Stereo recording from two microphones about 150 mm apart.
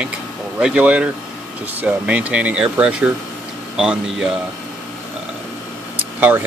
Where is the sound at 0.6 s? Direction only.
5° right (ahead or behind).